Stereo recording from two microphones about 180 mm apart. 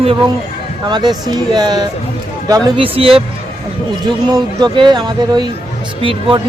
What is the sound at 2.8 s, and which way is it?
A man's voice, 30° right (ahead or behind).